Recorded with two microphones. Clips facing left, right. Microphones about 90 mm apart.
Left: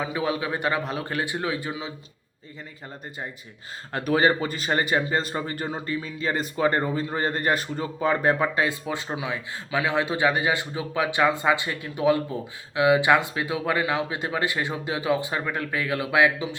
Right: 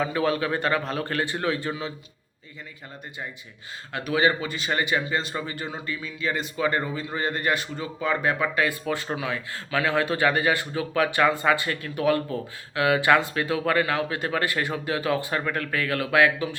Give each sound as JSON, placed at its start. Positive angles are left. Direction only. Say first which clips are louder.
{"t": 0.0, "sound": "a man's voice", "louder": "right 2 dB", "side_deg": 15}
{"t": 3.9, "sound": "speech", "louder": "left 2 dB", "side_deg": 40}